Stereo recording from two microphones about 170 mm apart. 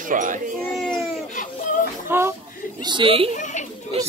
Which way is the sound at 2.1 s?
15° right (ahead or behind).